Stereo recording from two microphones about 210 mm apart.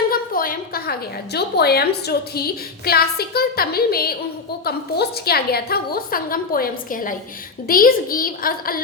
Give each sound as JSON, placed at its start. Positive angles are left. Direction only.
{"t": 0.1, "sound": "a woman's voice", "side_deg": 45}